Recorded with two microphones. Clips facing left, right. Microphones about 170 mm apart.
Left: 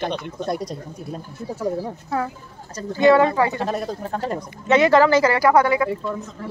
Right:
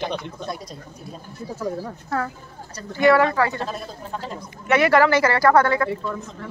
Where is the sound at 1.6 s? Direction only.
25° left (ahead or behind).